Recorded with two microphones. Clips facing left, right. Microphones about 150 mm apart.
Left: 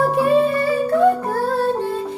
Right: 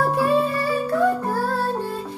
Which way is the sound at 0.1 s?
20° left (ahead or behind).